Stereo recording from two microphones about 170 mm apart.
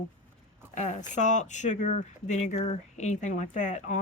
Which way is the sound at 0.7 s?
45° left (ahead or behind).